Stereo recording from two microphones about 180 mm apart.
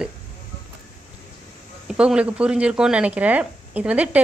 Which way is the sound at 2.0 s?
5° right (ahead or behind).